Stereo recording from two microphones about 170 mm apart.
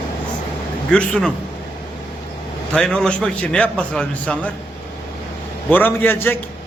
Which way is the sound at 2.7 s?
5° left (ahead or behind).